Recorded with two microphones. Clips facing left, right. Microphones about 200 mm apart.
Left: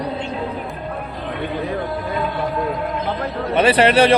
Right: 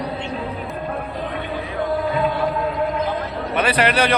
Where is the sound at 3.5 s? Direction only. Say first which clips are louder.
Left 5 dB; 25° left (ahead or behind).